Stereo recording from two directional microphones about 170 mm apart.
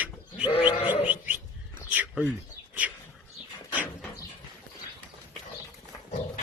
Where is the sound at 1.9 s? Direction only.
10° right (ahead or behind).